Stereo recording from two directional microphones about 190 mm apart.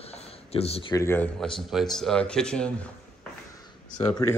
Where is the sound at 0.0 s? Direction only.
30° left (ahead or behind).